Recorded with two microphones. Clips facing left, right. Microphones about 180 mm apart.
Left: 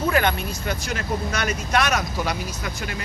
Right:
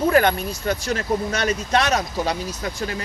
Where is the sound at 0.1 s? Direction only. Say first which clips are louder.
Right 4 dB; 35° right (ahead or behind).